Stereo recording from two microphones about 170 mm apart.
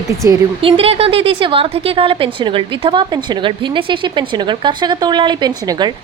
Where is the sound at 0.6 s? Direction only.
35° right (ahead or behind).